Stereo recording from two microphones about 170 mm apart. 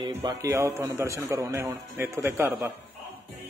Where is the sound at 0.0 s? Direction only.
25° right (ahead or behind).